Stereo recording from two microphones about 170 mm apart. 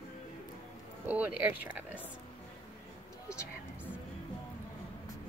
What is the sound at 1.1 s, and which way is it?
Speech, 10° right (ahead or behind).